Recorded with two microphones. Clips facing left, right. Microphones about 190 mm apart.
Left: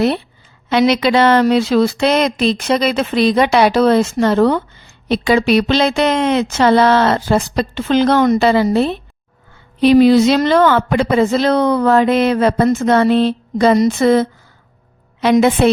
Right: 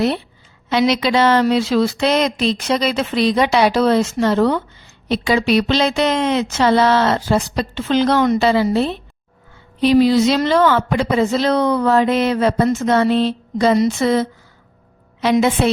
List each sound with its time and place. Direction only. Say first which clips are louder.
0.7 s speech: left 3 dB; 60° left (ahead or behind)